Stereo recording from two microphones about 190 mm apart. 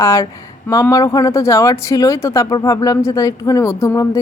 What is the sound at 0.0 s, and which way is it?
Speech, 15° left (ahead or behind).